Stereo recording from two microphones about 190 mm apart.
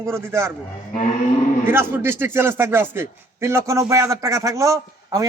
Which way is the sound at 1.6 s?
10° right (ahead or behind).